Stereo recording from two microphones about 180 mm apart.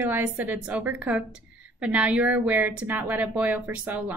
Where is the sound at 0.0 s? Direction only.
10° right (ahead or behind).